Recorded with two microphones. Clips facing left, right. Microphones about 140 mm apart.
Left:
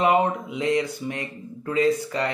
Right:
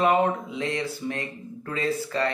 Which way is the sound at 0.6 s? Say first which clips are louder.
Left 5 dB; 15° left (ahead or behind).